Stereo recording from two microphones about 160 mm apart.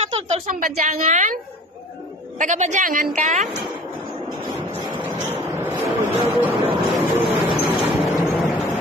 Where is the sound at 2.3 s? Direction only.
50° right (ahead or behind).